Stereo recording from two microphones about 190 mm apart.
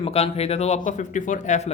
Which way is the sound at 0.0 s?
30° left (ahead or behind).